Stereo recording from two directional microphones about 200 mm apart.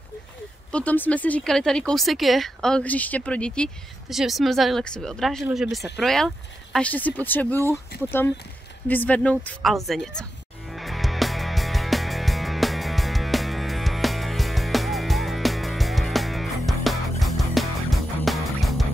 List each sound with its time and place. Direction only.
0.7 s speech: 5° left (ahead or behind)
7.9 s speech: 55° left (ahead or behind)
8.8 s speech: 10° left (ahead or behind)
10.7 s music: centre (ahead or behind)